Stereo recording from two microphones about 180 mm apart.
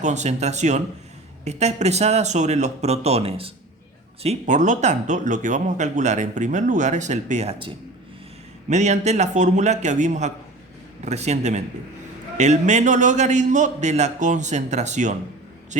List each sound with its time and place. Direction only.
0.0 s a man's voice: 40° right (ahead or behind)
8.7 s a man's voice: 40° right (ahead or behind)